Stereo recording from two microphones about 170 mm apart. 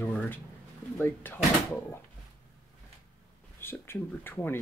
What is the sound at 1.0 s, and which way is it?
Speech, 10° left (ahead or behind).